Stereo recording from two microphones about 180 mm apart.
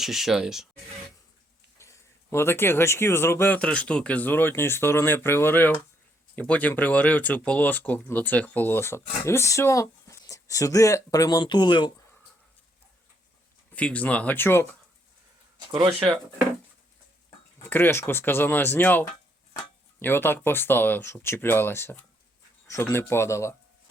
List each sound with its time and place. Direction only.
0.0 s speech: centre (ahead or behind)
1.8 s speech: 15° left (ahead or behind)
13.7 s speech: 10° left (ahead or behind)
15.5 s speech: 20° right (ahead or behind)
17.6 s speech: 10° left (ahead or behind)